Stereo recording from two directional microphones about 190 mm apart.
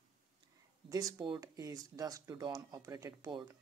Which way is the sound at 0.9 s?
20° right (ahead or behind).